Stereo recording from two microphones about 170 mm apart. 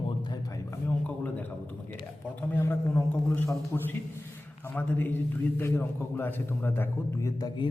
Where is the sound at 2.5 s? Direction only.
15° left (ahead or behind).